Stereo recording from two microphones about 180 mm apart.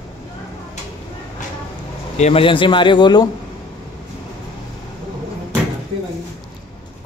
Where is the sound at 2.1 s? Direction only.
35° left (ahead or behind).